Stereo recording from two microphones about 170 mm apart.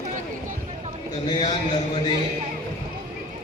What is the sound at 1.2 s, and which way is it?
Speech, 30° left (ahead or behind).